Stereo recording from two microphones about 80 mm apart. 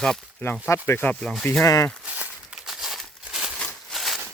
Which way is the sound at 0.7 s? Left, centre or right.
Left.